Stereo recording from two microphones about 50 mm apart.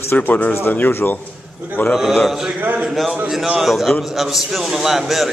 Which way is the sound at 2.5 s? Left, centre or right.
Right.